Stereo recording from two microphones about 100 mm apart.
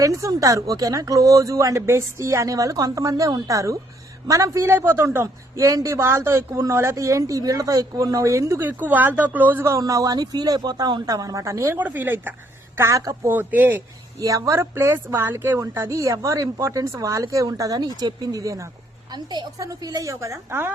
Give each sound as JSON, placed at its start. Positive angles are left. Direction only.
{"t": 0.0, "sound": "a woman's voice", "side_deg": -35}
{"t": 8.6, "sound": "speech", "side_deg": -15}
{"t": 9.6, "sound": "a woman's voice", "side_deg": -30}
{"t": 11.8, "sound": "a woman's voice", "side_deg": -15}
{"t": 14.2, "sound": "a woman's voice", "side_deg": -35}
{"t": 19.1, "sound": "a woman's voice", "side_deg": -45}